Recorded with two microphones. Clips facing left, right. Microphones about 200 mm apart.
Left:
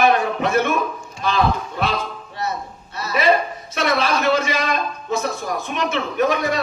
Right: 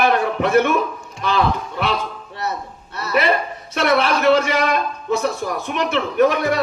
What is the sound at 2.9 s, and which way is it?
A man's voice, 60° right (ahead or behind).